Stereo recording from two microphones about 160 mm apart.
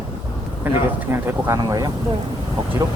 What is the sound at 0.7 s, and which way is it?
Speech, 10° right (ahead or behind).